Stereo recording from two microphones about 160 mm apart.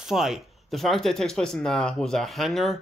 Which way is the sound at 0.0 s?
Centre (ahead or behind).